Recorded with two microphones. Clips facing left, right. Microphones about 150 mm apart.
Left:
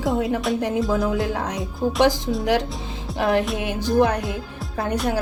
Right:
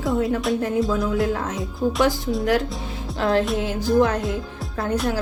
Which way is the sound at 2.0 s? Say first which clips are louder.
Left 4 dB; 90° left.